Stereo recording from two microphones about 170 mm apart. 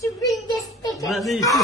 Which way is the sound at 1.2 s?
Centre (ahead or behind).